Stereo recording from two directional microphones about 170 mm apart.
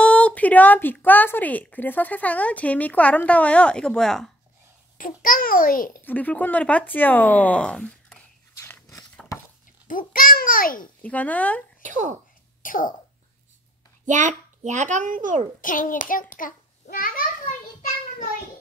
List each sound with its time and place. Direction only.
0.0 s speech: 5° left (ahead or behind)
4.9 s a child's voice: 55° left (ahead or behind)
6.0 s speech: 10° left (ahead or behind)
8.5 s biting: 15° left (ahead or behind)
8.9 s chopping: 5° left (ahead or behind)
9.8 s a child's voice: 55° left (ahead or behind)
11.0 s speech: 10° left (ahead or behind)
11.8 s speech: 45° right (ahead or behind)
12.6 s a sound: 55° left (ahead or behind)
14.0 s a child's voice: 45° right (ahead or behind)
15.6 s a child's voice: 50° left (ahead or behind)